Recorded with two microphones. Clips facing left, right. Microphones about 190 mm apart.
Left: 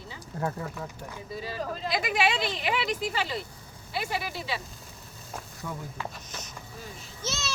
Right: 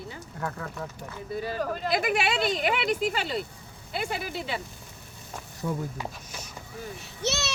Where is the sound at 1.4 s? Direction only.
55° right (ahead or behind).